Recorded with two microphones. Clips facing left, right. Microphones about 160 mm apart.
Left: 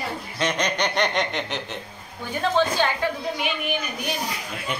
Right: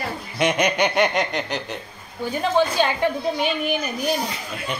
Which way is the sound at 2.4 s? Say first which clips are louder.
Right 2 dB; 15° right (ahead or behind).